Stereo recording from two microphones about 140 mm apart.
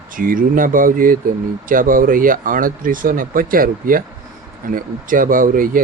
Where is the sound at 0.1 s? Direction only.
80° right.